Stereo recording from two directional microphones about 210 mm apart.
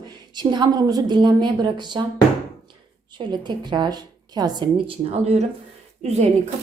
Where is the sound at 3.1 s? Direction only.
20° right (ahead or behind).